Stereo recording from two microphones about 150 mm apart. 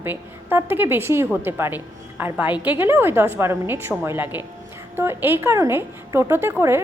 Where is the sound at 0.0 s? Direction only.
15° right (ahead or behind).